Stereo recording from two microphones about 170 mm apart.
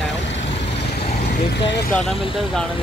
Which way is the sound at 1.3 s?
85° left.